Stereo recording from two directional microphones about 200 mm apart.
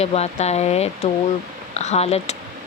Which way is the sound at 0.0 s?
30° left (ahead or behind).